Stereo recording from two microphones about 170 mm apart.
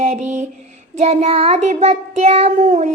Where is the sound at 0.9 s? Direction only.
40° right (ahead or behind).